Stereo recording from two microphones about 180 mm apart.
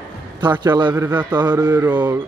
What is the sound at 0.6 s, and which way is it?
Mantra, 25° right (ahead or behind).